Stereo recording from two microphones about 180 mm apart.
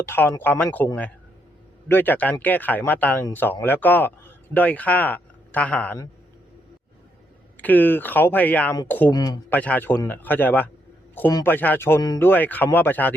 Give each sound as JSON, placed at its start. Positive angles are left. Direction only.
{"t": 0.0, "sound": "speech", "side_deg": 10}
{"t": 1.9, "sound": "a man's voice", "side_deg": 10}
{"t": 7.5, "sound": "speech", "side_deg": 10}
{"t": 9.5, "sound": "speech", "side_deg": 10}